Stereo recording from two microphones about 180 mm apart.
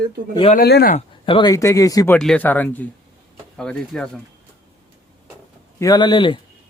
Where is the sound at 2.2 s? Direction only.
5° left (ahead or behind).